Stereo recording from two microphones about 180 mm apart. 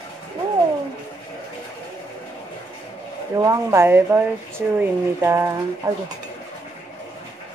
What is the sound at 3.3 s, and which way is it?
Speech, 15° right (ahead or behind).